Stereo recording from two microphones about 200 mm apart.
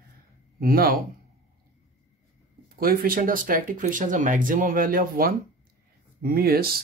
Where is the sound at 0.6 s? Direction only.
45° right (ahead or behind).